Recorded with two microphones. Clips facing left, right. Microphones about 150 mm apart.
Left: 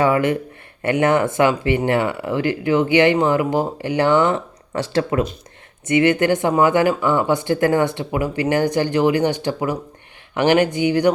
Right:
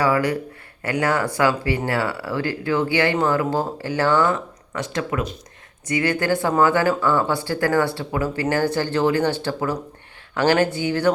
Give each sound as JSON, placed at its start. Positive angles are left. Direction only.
{"t": 0.0, "sound": "speech", "side_deg": 25}
{"t": 5.9, "sound": "speech", "side_deg": 20}